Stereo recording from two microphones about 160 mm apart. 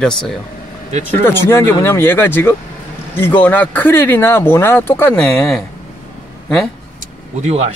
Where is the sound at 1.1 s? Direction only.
15° left (ahead or behind).